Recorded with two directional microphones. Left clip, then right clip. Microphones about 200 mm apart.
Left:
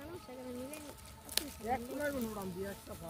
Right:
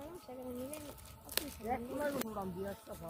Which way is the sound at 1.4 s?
20° right (ahead or behind).